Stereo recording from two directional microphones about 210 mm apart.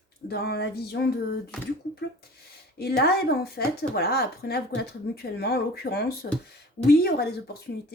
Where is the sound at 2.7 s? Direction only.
50° left (ahead or behind).